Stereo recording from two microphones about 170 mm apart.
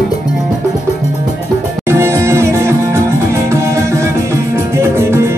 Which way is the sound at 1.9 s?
15° right (ahead or behind).